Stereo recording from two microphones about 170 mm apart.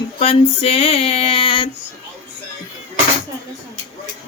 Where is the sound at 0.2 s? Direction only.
35° left (ahead or behind).